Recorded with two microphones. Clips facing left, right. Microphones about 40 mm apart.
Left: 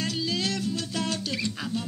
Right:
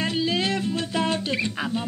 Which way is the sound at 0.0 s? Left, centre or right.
Right.